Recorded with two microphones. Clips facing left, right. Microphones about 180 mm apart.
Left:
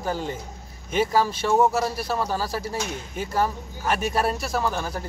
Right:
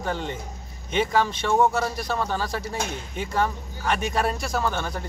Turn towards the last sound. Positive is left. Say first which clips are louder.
# even
turn(degrees=5)  # may be behind; listen again after turning